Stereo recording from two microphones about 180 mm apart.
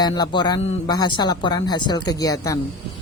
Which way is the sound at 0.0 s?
25° left (ahead or behind).